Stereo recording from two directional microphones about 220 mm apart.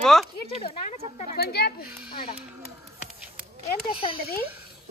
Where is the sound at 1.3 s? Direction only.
45° left (ahead or behind).